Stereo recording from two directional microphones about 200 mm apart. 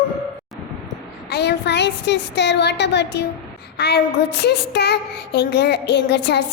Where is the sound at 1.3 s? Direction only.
55° left (ahead or behind).